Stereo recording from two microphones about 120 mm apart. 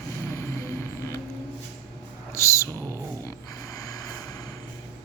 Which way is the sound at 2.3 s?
25° left (ahead or behind).